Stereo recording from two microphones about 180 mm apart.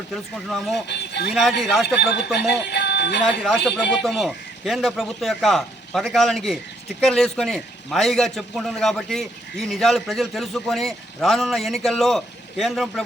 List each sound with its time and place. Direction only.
0.1 s a man's voice: centre (ahead or behind)
0.9 s speech: 70° left (ahead or behind)
1.3 s a man's voice: centre (ahead or behind)
2.5 s speech: 65° left (ahead or behind)
3.2 s a man's voice: centre (ahead or behind)